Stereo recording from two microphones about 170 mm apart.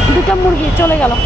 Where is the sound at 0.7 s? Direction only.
10° left (ahead or behind).